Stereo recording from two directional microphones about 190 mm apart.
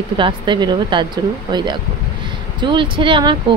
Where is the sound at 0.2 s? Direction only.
25° right (ahead or behind).